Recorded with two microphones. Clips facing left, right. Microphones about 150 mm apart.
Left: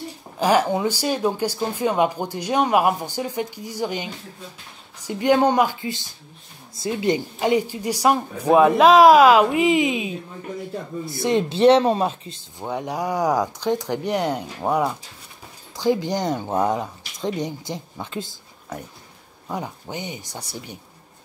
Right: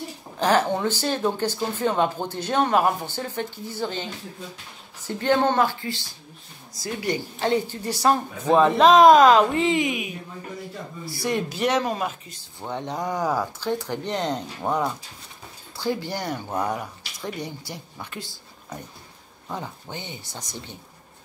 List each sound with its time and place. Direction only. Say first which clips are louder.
0.4 s speech: left 2 dB; 10° left (ahead or behind); by 12.4 s 30° left (ahead or behind)
12.5 s speech: left 3 dB; 10° left (ahead or behind)
19.5 s speech: left 4 dB; 15° left (ahead or behind)